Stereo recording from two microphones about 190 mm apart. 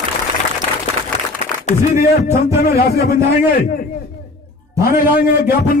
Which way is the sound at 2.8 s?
55° left (ahead or behind).